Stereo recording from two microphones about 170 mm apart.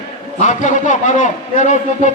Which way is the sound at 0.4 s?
45° left (ahead or behind).